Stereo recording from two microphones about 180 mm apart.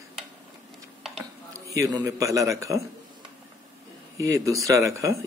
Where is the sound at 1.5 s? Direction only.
20° right (ahead or behind).